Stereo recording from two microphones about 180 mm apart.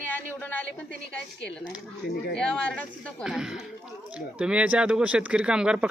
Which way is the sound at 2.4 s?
5° left (ahead or behind).